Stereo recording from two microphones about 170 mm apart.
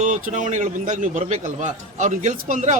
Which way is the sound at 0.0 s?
45° right (ahead or behind).